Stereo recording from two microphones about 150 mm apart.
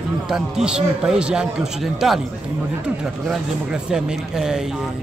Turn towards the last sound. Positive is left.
turn(degrees=-5)  # may be behind; listen again after turning